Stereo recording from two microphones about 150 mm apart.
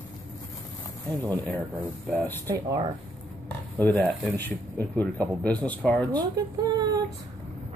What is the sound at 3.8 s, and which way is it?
Speech, 10° left (ahead or behind).